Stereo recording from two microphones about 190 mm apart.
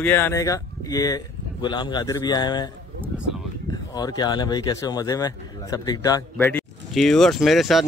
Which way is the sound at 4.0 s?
20° left (ahead or behind).